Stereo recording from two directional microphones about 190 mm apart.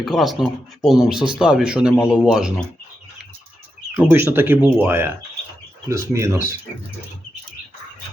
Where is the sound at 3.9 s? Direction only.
10° right (ahead or behind).